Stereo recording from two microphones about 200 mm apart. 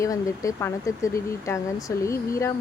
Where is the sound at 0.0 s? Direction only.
15° left (ahead or behind).